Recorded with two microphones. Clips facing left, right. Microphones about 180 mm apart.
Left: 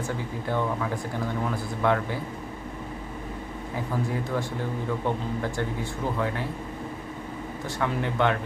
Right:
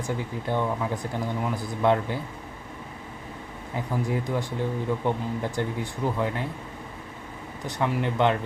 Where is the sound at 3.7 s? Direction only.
15° right (ahead or behind).